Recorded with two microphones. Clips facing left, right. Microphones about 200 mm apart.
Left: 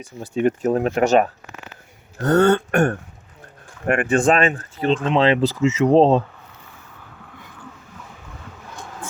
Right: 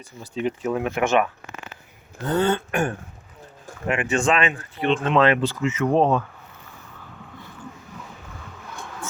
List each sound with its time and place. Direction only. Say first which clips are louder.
0.2 s speech: left 6 dB; 50° left (ahead or behind)
2.2 s speech: left 6 dB; 70° left (ahead or behind); by 6.2 s 25° left (ahead or behind)